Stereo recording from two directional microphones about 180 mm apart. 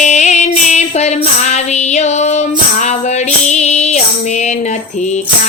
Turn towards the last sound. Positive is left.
turn(degrees=35)  # may be behind; listen again after turning